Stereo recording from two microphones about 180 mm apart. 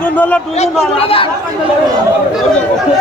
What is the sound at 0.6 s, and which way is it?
Speech, 30° left (ahead or behind).